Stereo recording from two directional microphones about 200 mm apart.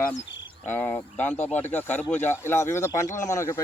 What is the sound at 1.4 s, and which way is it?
Speech, 35° left (ahead or behind).